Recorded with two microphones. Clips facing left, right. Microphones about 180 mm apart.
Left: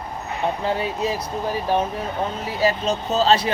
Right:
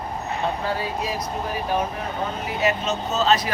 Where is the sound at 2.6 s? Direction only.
30° left (ahead or behind).